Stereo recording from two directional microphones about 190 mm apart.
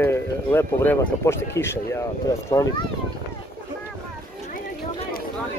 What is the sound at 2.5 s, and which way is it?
Speech, 25° left (ahead or behind).